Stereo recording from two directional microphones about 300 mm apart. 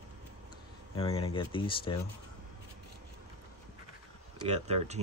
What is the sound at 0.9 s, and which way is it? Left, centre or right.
Speech, centre.